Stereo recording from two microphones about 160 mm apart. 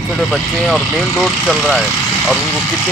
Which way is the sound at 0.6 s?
Centre (ahead or behind).